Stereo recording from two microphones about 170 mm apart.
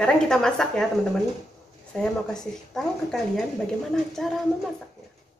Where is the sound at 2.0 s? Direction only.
5° left (ahead or behind).